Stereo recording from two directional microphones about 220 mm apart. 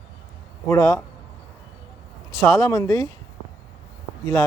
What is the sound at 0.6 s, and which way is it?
Speech, 15° left (ahead or behind).